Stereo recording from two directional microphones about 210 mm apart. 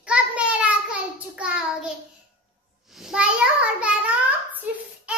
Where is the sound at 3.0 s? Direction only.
5° right (ahead or behind).